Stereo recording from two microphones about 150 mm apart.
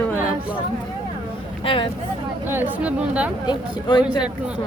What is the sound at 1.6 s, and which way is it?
Speech, 35° left (ahead or behind).